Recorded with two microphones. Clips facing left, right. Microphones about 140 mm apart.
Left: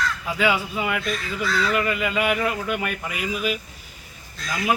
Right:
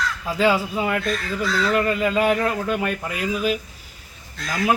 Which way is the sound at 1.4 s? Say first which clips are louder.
Right 2 dB; 5° left (ahead or behind).